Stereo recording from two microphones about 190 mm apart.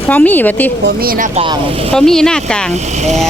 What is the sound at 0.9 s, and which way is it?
Speech, 50° right (ahead or behind).